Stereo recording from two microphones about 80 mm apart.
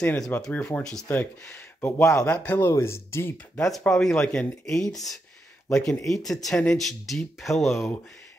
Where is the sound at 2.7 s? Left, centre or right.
Left.